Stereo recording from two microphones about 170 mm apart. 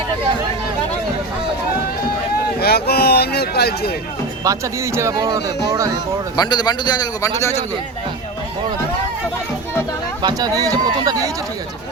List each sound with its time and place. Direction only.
2.6 s speech: 65° left (ahead or behind)
4.4 s speech: 15° right (ahead or behind)
6.3 s a man's voice: 25° left (ahead or behind)
10.2 s speech: 20° right (ahead or behind)